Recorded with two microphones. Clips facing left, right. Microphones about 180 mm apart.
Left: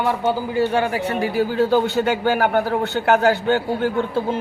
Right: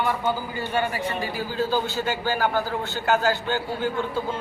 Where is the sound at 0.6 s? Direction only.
70° left (ahead or behind).